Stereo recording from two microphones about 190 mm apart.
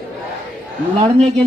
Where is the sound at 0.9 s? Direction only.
30° right (ahead or behind).